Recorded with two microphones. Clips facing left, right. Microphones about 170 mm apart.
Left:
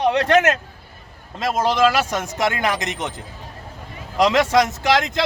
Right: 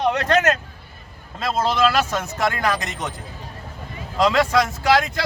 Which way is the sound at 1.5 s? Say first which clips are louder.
Left 1 dB; 15° left (ahead or behind).